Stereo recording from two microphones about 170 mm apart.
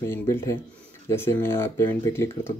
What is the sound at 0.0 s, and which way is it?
Speech, 15° left (ahead or behind).